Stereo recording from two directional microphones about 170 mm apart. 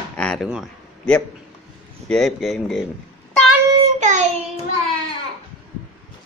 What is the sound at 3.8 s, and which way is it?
Child singing, 45° right (ahead or behind).